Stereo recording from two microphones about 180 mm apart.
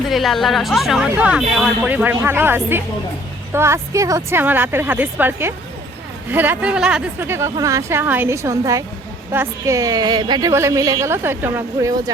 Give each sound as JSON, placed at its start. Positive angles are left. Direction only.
{"t": 0.1, "sound": "a woman's voice", "side_deg": 0}